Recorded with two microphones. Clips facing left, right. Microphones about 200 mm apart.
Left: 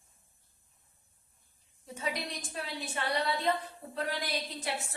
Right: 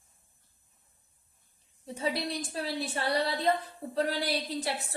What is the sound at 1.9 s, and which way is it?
A woman's voice, 30° right (ahead or behind).